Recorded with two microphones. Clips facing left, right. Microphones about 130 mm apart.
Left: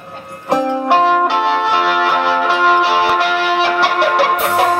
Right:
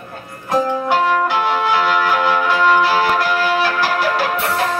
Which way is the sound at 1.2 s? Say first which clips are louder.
Left 2 dB; 75° left (ahead or behind).